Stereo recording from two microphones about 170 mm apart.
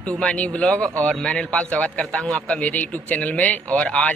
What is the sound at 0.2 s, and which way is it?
A man's voice, 5° left (ahead or behind).